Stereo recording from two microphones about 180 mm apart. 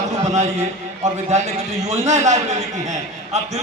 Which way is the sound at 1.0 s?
40° right (ahead or behind).